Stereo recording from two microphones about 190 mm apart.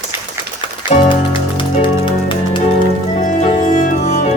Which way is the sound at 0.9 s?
25° left (ahead or behind).